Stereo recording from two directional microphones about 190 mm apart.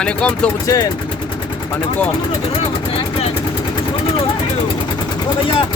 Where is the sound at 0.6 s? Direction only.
15° left (ahead or behind).